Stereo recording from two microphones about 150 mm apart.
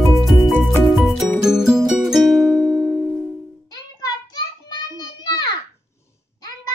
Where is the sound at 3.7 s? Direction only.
25° left (ahead or behind).